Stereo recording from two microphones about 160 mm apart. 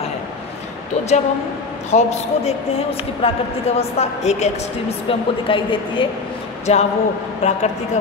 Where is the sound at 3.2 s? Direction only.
35° left (ahead or behind).